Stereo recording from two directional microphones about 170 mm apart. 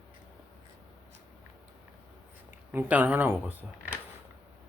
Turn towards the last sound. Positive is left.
turn(degrees=-10)  # may be behind; listen again after turning